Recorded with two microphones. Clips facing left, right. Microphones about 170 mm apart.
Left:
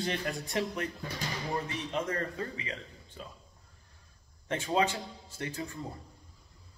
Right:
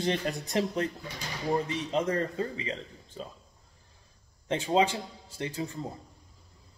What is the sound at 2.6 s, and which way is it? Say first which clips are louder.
Speech: right 5 dB; 30° right (ahead or behind).